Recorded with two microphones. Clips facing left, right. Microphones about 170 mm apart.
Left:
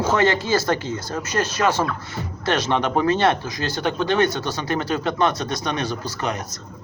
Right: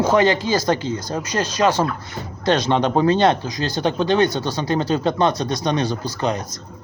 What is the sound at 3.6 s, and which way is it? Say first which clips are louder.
Speech: right 3 dB; 35° right (ahead or behind).